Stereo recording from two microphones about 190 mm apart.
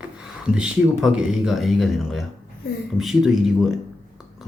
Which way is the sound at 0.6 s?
5° right (ahead or behind).